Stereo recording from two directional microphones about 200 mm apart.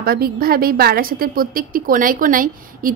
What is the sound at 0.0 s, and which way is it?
A woman's voice, 50° right (ahead or behind).